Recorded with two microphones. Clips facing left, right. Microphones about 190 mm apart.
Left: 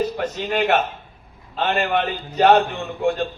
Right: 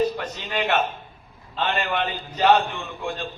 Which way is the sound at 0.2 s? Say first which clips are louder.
Left 6 dB; 45° left (ahead or behind).